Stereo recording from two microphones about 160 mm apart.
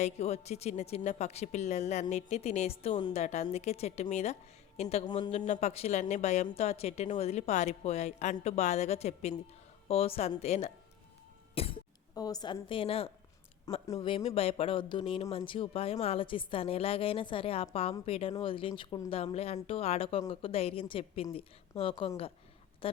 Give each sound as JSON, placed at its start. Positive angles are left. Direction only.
{"t": 0.0, "sound": "speech", "side_deg": 40}
{"t": 3.1, "sound": "speech", "side_deg": 45}
{"t": 11.5, "sound": "cough", "side_deg": 35}
{"t": 12.1, "sound": "a woman's voice", "side_deg": 25}
{"t": 13.7, "sound": "a woman's voice", "side_deg": 20}
{"t": 14.3, "sound": "speech", "side_deg": 35}